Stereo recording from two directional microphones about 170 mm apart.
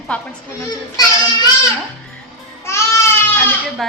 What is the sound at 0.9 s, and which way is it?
Child singing, 20° left (ahead or behind).